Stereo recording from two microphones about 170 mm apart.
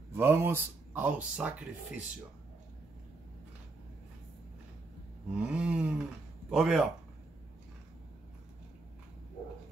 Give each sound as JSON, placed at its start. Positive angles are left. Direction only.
{"t": 0.1, "sound": "speech", "side_deg": -15}
{"t": 5.4, "sound": "a sound", "side_deg": -5}
{"t": 6.5, "sound": "a man's voice", "side_deg": 0}